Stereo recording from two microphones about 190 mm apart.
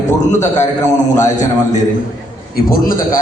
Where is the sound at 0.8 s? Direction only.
15° left (ahead or behind).